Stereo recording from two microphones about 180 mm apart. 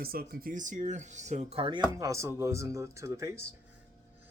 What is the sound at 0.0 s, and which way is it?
Speech, 55° right (ahead or behind).